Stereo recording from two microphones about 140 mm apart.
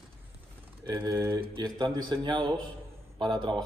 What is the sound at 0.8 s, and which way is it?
Speech, 30° right (ahead or behind).